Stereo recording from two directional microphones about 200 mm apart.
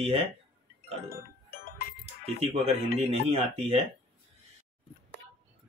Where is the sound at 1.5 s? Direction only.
50° left (ahead or behind).